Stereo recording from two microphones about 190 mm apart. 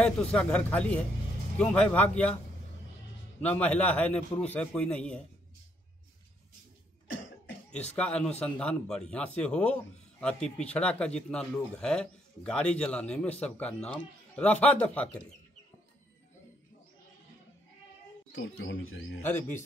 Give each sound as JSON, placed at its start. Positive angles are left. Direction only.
{"t": 0.0, "sound": "a man's voice", "side_deg": 5}
{"t": 3.3, "sound": "a man's voice", "side_deg": 10}
{"t": 7.7, "sound": "a man's voice", "side_deg": 5}
{"t": 18.3, "sound": "speech", "side_deg": 90}
{"t": 19.2, "sound": "a man's voice", "side_deg": 10}